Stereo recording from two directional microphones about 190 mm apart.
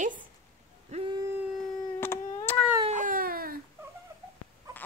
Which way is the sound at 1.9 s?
10° left (ahead or behind).